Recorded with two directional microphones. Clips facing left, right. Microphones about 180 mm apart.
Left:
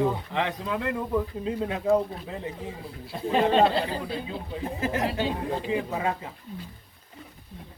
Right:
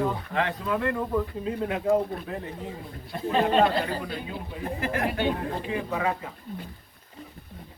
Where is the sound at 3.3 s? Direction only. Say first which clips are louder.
Left 1 dB; 20° left (ahead or behind).